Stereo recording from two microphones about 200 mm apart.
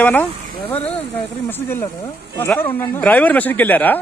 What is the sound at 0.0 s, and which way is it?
Speech, 10° left (ahead or behind).